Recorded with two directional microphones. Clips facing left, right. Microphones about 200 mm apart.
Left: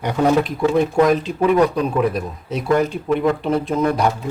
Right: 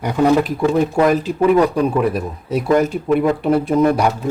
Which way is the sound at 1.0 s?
5° right (ahead or behind).